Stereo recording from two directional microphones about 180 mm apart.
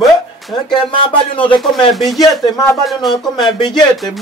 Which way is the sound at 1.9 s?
Centre (ahead or behind).